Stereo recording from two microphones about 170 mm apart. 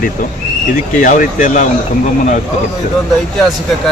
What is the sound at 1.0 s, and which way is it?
Speech, 50° left (ahead or behind).